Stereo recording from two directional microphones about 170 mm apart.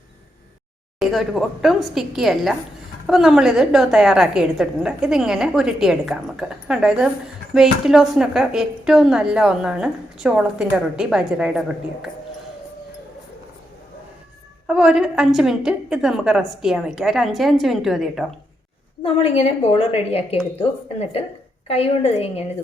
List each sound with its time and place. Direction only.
0.9 s a woman's voice: centre (ahead or behind)
14.7 s a woman's voice: 5° right (ahead or behind)
19.0 s a woman's voice: 35° left (ahead or behind)